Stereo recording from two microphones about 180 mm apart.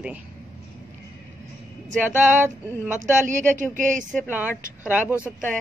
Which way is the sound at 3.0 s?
45° right (ahead or behind).